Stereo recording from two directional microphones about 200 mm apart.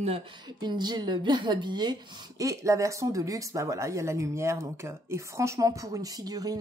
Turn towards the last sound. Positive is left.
turn(degrees=-20)  # may be behind; listen again after turning